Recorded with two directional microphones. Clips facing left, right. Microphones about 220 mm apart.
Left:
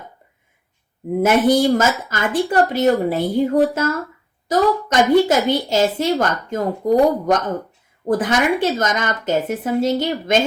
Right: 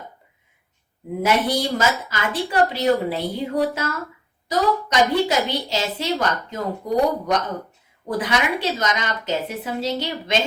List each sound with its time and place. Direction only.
1.2 s a woman's voice: 50° left (ahead or behind)